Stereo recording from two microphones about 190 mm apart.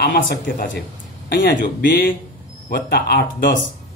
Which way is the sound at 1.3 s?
60° left (ahead or behind).